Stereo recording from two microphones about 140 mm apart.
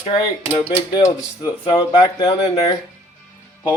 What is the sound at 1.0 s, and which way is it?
Speech, 25° left (ahead or behind).